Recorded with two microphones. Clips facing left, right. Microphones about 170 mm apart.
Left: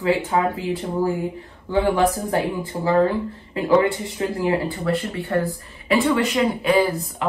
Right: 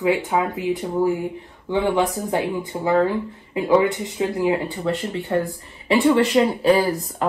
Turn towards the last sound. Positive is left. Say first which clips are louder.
# right 1 dB
turn(degrees=-35)  # may be behind; listen again after turning